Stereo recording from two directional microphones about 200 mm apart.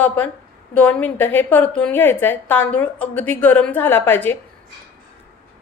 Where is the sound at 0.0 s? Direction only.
10° left (ahead or behind).